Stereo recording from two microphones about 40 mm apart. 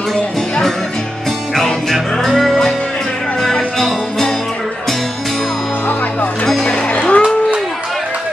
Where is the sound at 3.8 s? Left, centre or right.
Centre.